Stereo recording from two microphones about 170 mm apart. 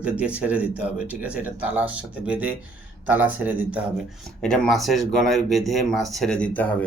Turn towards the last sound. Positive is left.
turn(degrees=10)  # may be behind; listen again after turning